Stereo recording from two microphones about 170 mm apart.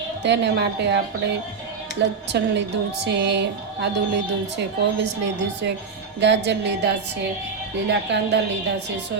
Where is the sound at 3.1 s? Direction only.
90° right.